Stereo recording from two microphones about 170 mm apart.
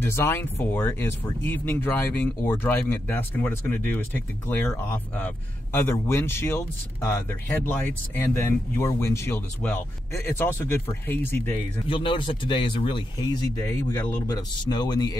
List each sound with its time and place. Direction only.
0.0 s speech: 15° left (ahead or behind)
11.9 s speech: 30° left (ahead or behind); by 14.4 s 15° left (ahead or behind)
14.6 s speech: 25° left (ahead or behind)